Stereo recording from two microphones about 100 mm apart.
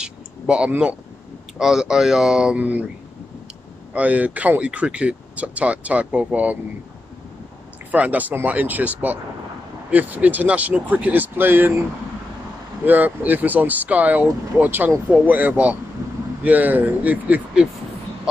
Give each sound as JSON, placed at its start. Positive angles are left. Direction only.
{"t": 0.0, "sound": "a sound", "side_deg": -10}
{"t": 1.6, "sound": "speech", "side_deg": -5}
{"t": 3.9, "sound": "speech", "side_deg": -15}
{"t": 7.9, "sound": "speech", "side_deg": -15}
{"t": 12.8, "sound": "speech", "side_deg": -15}